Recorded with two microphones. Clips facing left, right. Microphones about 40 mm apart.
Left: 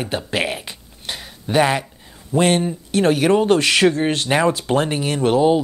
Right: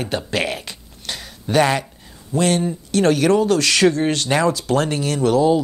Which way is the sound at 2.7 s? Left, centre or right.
Centre.